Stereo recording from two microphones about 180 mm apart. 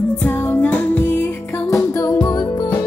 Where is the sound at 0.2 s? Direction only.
10° left (ahead or behind).